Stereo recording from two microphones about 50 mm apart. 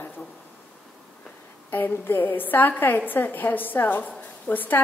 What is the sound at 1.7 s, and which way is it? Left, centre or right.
A woman's voice, left.